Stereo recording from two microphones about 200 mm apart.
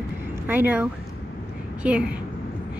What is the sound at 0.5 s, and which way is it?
A woman's voice, 10° right (ahead or behind).